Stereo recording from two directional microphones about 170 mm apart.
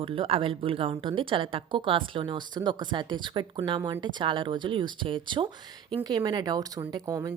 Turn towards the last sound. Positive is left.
turn(degrees=-20)  # may be behind; listen again after turning